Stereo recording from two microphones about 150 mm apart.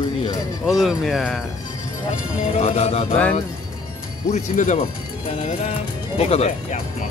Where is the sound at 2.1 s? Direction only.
45° left (ahead or behind).